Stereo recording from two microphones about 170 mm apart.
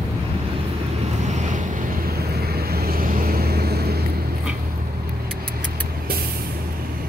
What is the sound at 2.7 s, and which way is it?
Vehicle, 60° right (ahead or behind).